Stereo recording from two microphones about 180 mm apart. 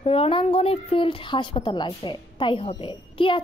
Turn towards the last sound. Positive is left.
turn(degrees=30)  # may be behind; listen again after turning